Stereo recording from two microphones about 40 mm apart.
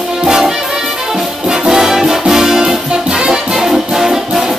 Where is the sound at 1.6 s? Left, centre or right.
Centre.